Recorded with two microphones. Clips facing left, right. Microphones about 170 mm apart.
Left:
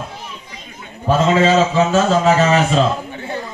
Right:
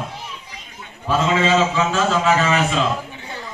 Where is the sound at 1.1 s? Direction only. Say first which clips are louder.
Left 4 dB; 40° left (ahead or behind).